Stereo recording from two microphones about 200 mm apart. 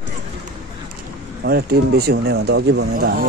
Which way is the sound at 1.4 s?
50° right (ahead or behind).